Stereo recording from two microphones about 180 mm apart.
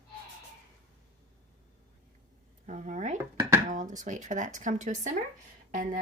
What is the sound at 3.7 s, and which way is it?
Speech, 45° right (ahead or behind).